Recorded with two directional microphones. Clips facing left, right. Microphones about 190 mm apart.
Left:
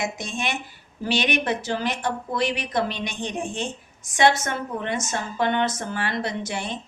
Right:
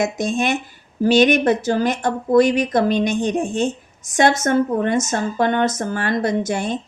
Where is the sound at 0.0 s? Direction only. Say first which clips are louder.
Right 9 dB; 45° right (ahead or behind).